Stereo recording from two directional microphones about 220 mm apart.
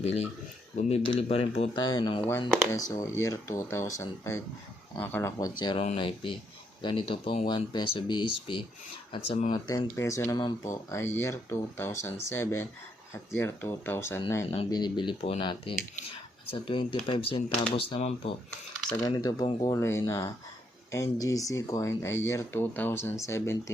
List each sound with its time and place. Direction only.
0.8 s speech: 30° left (ahead or behind); by 14.4 s 15° left (ahead or behind)
14.4 s speech: 25° left (ahead or behind)